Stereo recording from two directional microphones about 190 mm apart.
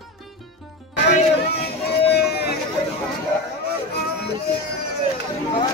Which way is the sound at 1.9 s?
60° left (ahead or behind).